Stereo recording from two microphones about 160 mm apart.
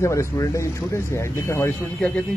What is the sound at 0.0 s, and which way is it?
Speech, 20° left (ahead or behind).